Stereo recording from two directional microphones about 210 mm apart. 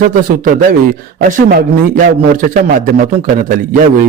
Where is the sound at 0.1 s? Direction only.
40° right (ahead or behind).